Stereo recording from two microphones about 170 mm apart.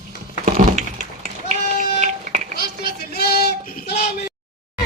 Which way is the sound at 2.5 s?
65° left (ahead or behind).